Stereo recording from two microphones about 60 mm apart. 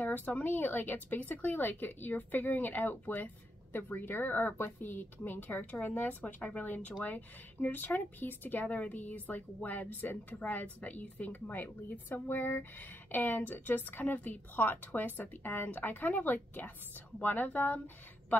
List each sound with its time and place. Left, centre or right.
0.0 s speech: left